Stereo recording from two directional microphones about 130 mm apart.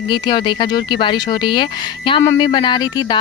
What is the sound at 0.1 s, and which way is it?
Speech, 35° left (ahead or behind).